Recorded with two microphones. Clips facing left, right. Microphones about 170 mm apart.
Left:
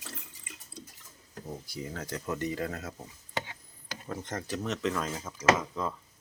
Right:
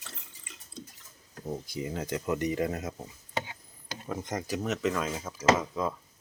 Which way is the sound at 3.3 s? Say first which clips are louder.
Right 2 dB; 20° right (ahead or behind).